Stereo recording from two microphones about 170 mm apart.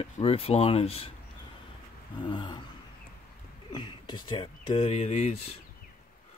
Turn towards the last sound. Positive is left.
turn(degrees=40)  # may be behind; listen again after turning